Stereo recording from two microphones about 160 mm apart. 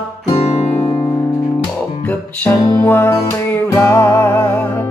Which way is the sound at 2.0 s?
10° left (ahead or behind).